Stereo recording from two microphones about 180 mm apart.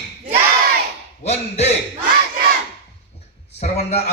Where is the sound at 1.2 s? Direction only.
35° left (ahead or behind).